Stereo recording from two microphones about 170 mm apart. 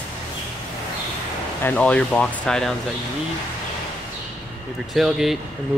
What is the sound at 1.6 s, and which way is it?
Speech, 10° left (ahead or behind).